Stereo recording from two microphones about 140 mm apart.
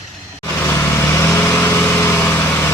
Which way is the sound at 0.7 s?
20° left (ahead or behind).